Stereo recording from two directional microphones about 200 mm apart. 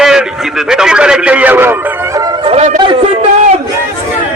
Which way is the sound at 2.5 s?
35° right (ahead or behind).